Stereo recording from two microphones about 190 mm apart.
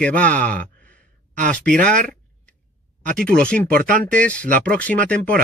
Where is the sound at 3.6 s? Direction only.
45° right (ahead or behind).